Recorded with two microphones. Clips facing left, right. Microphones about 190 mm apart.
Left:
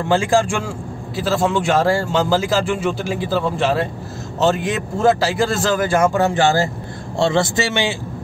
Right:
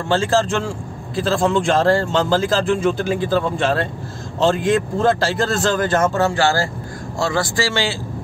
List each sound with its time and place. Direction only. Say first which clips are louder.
0.0 s a man's voice: left 1 dB; 15° left (ahead or behind)